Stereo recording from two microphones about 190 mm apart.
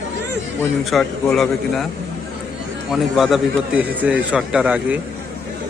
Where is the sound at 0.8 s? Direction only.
Centre (ahead or behind).